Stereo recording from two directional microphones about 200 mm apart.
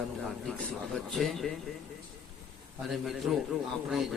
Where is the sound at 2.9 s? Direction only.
Centre (ahead or behind).